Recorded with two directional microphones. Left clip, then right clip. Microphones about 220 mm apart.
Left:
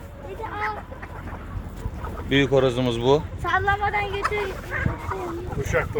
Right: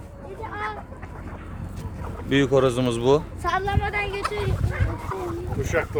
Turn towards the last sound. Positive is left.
turn(degrees=-45)  # may be behind; listen again after turning